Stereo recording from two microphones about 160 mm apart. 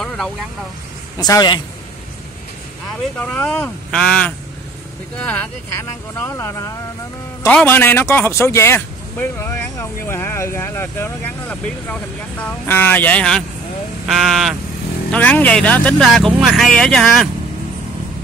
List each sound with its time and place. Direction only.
1.1 s speech: 25° left (ahead or behind)
3.2 s speech: 10° left (ahead or behind)
15.0 s speech: 10° left (ahead or behind)